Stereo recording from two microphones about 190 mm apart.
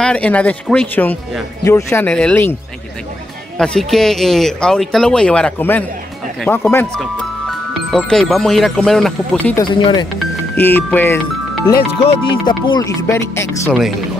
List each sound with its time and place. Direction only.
0.0 s speech: 5° left (ahead or behind)
3.5 s speech: 5° left (ahead or behind)
9.8 s speech: 25° left (ahead or behind)
10.1 s speech: 10° left (ahead or behind)
12.0 s speech: 30° left (ahead or behind)